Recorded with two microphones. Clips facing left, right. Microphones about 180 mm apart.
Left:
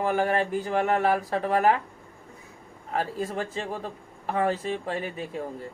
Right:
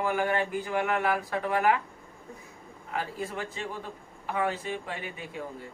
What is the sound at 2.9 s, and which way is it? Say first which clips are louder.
Speech: left 5 dB; 40° left (ahead or behind).